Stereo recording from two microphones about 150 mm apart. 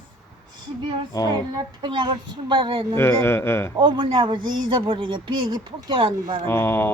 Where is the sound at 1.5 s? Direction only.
30° right (ahead or behind).